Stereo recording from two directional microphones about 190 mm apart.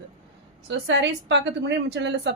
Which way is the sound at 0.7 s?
70° right (ahead or behind).